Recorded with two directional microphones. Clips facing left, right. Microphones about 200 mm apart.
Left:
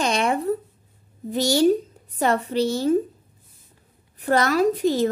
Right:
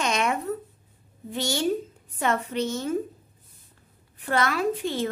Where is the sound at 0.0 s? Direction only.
35° left (ahead or behind).